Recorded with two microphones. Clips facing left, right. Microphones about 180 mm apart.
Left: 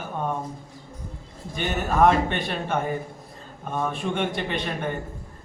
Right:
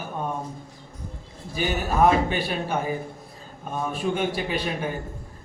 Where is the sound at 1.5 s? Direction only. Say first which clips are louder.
Even; 5° right (ahead or behind).